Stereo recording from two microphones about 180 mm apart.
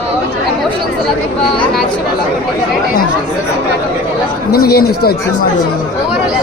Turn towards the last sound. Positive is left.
turn(degrees=60)  # may be behind; listen again after turning